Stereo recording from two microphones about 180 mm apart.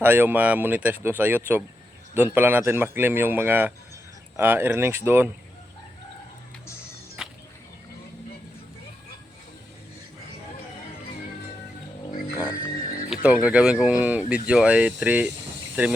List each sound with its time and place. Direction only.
0.0 s speech: 10° right (ahead or behind)
7.2 s a sound: 5° right (ahead or behind)
12.5 s music: 50° left (ahead or behind)
13.2 s speech: 5° right (ahead or behind)